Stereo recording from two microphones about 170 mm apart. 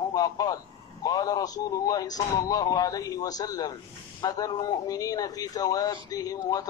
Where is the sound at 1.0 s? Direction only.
20° left (ahead or behind).